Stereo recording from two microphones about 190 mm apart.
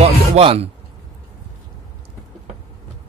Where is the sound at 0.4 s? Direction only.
30° right (ahead or behind).